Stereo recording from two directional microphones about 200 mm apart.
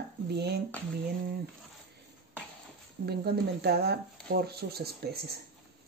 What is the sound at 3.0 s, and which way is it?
Speech, 55° right (ahead or behind).